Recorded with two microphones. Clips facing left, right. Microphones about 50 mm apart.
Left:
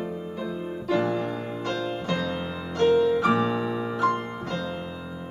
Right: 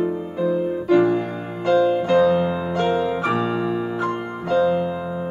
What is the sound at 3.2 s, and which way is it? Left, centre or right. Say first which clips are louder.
Keyboard: right 2 dB; centre.